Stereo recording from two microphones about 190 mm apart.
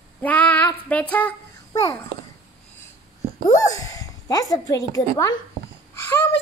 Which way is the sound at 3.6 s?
20° left (ahead or behind).